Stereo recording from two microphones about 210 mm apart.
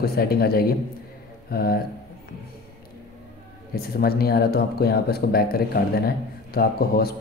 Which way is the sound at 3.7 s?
45° left (ahead or behind).